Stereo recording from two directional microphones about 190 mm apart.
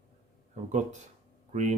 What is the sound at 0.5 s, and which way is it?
Speech, 40° right (ahead or behind).